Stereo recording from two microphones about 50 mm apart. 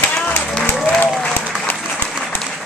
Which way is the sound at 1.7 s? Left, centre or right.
Left.